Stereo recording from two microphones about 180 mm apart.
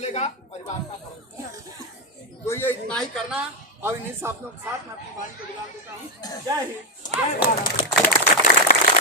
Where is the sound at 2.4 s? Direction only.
10° left (ahead or behind).